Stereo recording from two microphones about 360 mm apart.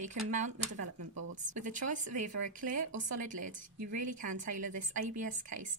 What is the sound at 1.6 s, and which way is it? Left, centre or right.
A woman's voice, right.